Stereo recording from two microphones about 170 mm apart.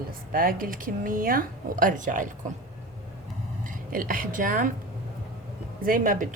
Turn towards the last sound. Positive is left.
turn(degrees=-55)  # may be behind; listen again after turning